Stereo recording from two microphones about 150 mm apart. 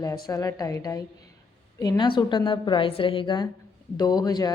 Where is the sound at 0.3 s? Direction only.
25° left (ahead or behind).